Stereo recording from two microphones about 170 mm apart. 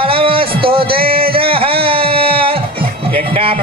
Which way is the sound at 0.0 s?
30° right (ahead or behind).